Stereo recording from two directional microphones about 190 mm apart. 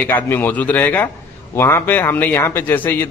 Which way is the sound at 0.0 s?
10° left (ahead or behind).